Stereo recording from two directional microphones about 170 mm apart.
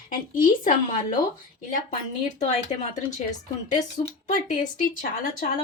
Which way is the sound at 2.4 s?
40° left (ahead or behind).